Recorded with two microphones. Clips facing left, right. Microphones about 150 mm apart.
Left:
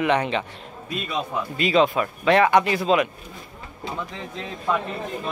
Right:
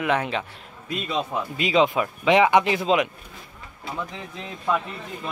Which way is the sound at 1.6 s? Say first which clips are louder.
Left 1 dB; 15° right (ahead or behind).